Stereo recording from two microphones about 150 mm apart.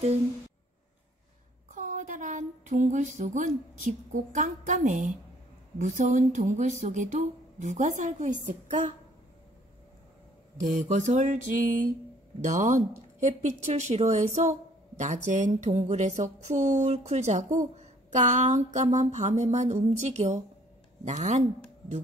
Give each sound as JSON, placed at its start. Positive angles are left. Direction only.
{"t": 1.7, "sound": "a sound", "side_deg": -55}
{"t": 5.8, "sound": "speech", "side_deg": -55}
{"t": 10.6, "sound": "speech", "side_deg": -55}